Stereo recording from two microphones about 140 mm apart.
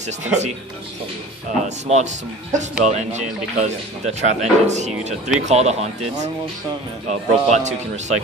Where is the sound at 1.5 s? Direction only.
55° right (ahead or behind).